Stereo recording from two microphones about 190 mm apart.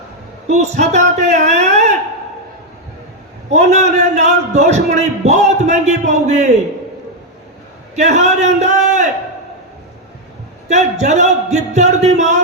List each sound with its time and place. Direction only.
0.4 s a man's voice: 35° right (ahead or behind)
3.5 s a man's voice: 35° right (ahead or behind)
7.9 s a man's voice: 35° right (ahead or behind)
10.7 s a man's voice: 35° right (ahead or behind)